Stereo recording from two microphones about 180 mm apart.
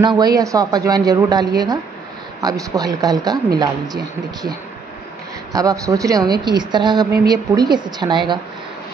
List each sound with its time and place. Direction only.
0.2 s a woman's voice: 20° right (ahead or behind)